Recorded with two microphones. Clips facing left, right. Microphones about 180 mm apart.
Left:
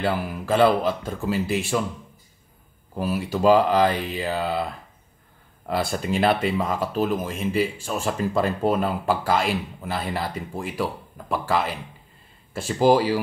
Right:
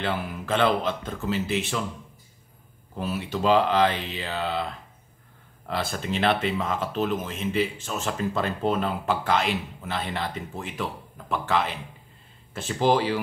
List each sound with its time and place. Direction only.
0.0 s speech: 5° left (ahead or behind)
3.0 s speech: 5° left (ahead or behind)
3.9 s mantra: 45° left (ahead or behind)
4.2 s speech: 5° left (ahead or behind)
5.7 s speech: 10° left (ahead or behind)
12.7 s speech: 5° left (ahead or behind)